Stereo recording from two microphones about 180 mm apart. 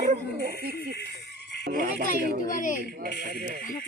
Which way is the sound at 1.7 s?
50° right (ahead or behind).